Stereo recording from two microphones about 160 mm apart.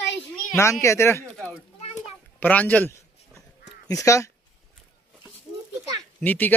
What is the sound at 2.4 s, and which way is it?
Speech, 10° left (ahead or behind).